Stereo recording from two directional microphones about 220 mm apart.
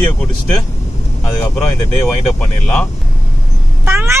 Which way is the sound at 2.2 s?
5° left (ahead or behind).